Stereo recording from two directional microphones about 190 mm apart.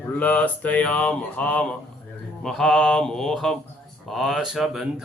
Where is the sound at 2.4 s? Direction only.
5° left (ahead or behind).